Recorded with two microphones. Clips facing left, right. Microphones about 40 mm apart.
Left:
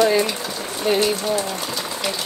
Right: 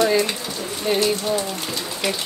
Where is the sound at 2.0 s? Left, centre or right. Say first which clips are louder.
Right 3 dB; centre.